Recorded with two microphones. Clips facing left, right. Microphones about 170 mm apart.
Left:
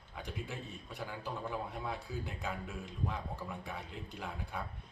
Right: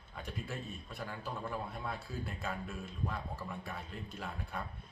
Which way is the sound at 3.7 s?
15° left (ahead or behind).